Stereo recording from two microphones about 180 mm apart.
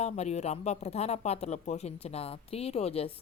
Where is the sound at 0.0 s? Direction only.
35° left (ahead or behind).